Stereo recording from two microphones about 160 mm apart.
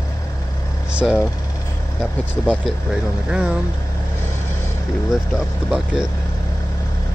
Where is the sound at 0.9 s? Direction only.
5° right (ahead or behind).